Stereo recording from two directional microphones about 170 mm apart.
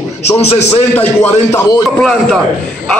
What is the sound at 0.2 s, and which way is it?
Speech, 40° left (ahead or behind).